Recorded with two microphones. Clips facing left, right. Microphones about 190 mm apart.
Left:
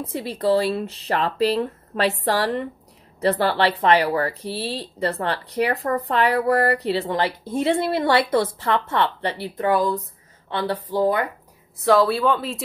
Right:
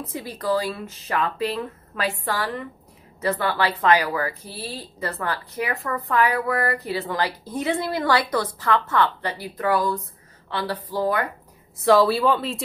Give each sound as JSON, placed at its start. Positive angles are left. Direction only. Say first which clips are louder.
{"t": 0.0, "sound": "speech", "louder": "left 5 dB", "side_deg": 30}
{"t": 11.8, "sound": "speech", "louder": "even", "side_deg": 0}